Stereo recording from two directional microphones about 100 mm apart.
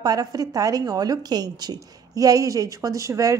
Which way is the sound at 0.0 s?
40° right (ahead or behind).